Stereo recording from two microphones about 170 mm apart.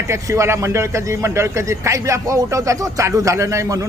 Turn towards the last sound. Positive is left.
turn(degrees=-20)  # may be behind; listen again after turning